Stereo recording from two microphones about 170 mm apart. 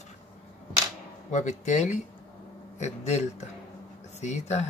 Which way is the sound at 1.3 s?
45° left (ahead or behind).